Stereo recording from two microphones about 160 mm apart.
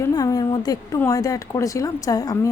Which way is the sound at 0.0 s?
20° left (ahead or behind).